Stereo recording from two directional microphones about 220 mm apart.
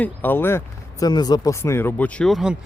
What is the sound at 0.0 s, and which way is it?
Speech, 10° left (ahead or behind).